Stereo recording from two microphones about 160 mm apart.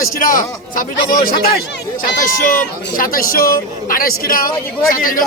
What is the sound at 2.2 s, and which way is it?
Speech, 60° left (ahead or behind).